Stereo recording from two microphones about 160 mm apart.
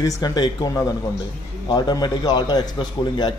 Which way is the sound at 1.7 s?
25° left (ahead or behind).